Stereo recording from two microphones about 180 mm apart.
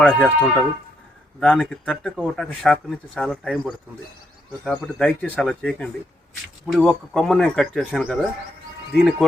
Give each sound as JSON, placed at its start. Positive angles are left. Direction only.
{"t": 0.2, "sound": "speech", "side_deg": 10}